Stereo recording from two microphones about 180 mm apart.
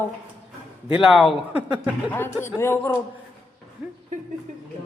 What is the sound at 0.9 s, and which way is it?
Speech, centre (ahead or behind).